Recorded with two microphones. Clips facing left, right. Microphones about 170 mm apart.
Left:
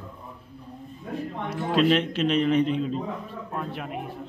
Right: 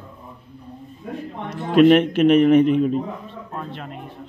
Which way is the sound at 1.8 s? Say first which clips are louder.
Right 9 dB; 55° right (ahead or behind).